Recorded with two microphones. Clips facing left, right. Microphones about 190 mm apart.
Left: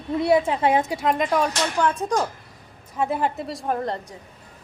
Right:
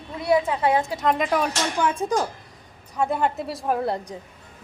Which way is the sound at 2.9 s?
Centre (ahead or behind).